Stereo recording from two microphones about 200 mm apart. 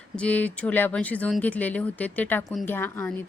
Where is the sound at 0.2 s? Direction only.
5° left (ahead or behind).